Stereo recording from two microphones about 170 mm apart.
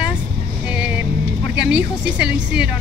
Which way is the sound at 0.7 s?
5° right (ahead or behind).